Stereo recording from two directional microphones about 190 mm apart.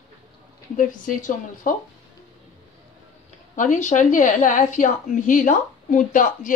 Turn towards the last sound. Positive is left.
turn(degrees=45)  # may be behind; listen again after turning